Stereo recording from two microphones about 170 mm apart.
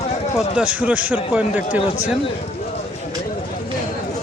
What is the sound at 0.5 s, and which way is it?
Speech, 10° right (ahead or behind).